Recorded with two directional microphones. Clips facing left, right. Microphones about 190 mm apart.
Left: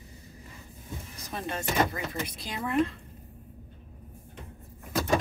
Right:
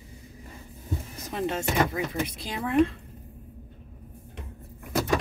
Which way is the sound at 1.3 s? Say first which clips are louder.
Right 3 dB; 20° right (ahead or behind).